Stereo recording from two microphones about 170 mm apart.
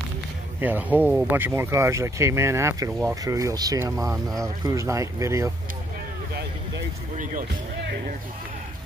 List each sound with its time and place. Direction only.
0.6 s speech: 10° right (ahead or behind)